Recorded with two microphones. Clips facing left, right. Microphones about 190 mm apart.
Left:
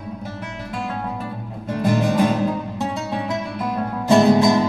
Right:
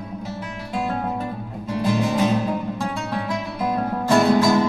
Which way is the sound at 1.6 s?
55° left (ahead or behind).